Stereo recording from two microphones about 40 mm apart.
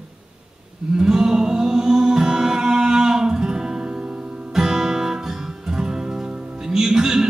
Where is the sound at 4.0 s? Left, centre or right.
Right.